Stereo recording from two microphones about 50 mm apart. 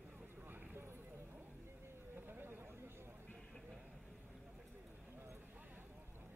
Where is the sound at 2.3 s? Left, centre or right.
Right.